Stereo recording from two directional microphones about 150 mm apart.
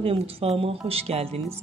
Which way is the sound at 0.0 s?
40° right (ahead or behind).